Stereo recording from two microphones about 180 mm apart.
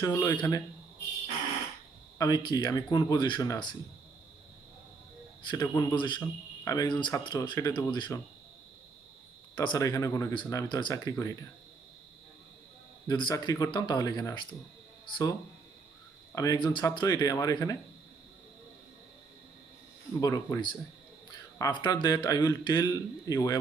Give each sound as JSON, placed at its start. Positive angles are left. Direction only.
{"t": 0.0, "sound": "speech", "side_deg": 20}
{"t": 2.1, "sound": "speech", "side_deg": 20}
{"t": 5.5, "sound": "speech", "side_deg": 20}
{"t": 9.6, "sound": "speech", "side_deg": 20}
{"t": 13.1, "sound": "speech", "side_deg": 25}
{"t": 16.3, "sound": "speech", "side_deg": 20}
{"t": 20.2, "sound": "speech", "side_deg": 20}